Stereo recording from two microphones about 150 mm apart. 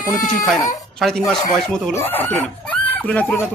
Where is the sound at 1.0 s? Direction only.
5° left (ahead or behind).